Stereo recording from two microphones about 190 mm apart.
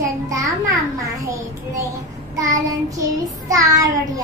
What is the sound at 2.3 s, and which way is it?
A child's voice, 15° right (ahead or behind).